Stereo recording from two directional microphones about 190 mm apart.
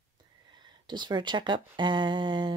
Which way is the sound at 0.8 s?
25° right (ahead or behind).